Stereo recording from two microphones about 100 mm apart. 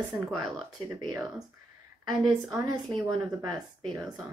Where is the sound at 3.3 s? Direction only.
40° right (ahead or behind).